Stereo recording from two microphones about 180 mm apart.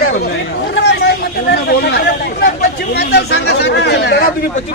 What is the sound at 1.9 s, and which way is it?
Speech, 65° left (ahead or behind).